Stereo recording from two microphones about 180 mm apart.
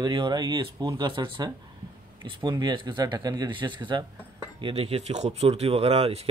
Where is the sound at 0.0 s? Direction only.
25° right (ahead or behind).